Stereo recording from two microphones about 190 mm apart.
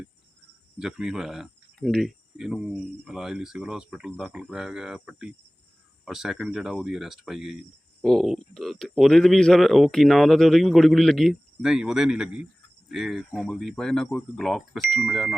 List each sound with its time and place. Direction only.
0.8 s speech: 5° right (ahead or behind)